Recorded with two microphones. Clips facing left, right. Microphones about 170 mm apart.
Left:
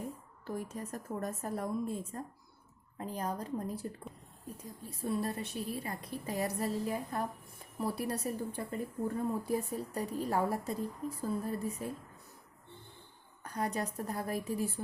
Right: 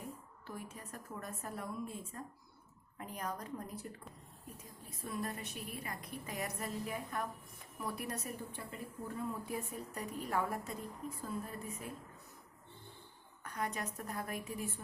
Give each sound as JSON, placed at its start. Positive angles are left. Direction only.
{"t": 0.4, "sound": "a woman's voice", "side_deg": 40}
{"t": 4.9, "sound": "a woman's voice", "side_deg": 30}
{"t": 13.4, "sound": "a woman's voice", "side_deg": 35}